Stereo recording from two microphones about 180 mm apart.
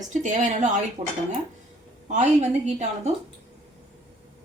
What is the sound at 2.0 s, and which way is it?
A woman's voice, 40° right (ahead or behind).